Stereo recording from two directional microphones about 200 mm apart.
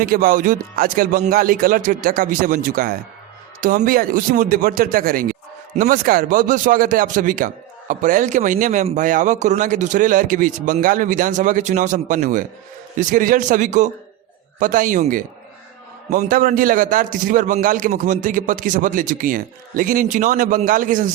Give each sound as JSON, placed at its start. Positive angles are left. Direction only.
{"t": 0.0, "sound": "speech", "side_deg": -45}